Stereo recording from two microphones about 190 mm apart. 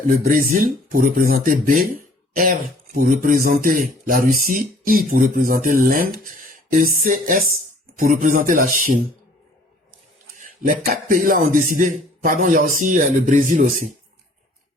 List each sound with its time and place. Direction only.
0.1 s speech: 50° right (ahead or behind)
10.3 s speech: 45° right (ahead or behind)